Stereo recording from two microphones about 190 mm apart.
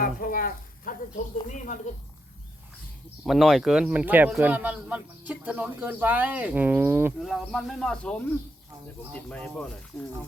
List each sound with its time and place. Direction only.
0.0 s a sound: 50° left (ahead or behind)
1.5 s a woman's voice: 45° left (ahead or behind)
3.2 s a man's voice: centre (ahead or behind)
7.2 s speech: centre (ahead or behind)